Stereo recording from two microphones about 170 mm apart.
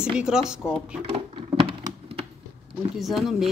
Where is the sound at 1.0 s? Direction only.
30° right (ahead or behind).